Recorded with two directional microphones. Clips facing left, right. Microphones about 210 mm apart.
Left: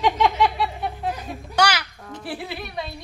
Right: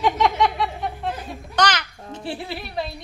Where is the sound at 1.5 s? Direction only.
10° left (ahead or behind).